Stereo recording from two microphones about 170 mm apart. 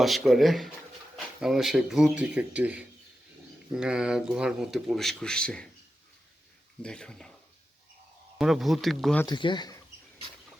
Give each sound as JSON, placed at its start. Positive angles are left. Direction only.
{"t": 0.0, "sound": "speech", "side_deg": 0}
{"t": 6.8, "sound": "speech", "side_deg": 5}
{"t": 8.4, "sound": "speech", "side_deg": 0}
{"t": 9.2, "sound": "speech", "side_deg": 25}